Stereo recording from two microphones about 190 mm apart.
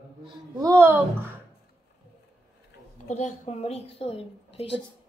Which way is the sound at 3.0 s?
40° left (ahead or behind).